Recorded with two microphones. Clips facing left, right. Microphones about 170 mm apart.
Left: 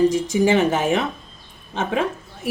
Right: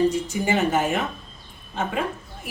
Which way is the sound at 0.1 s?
90° left.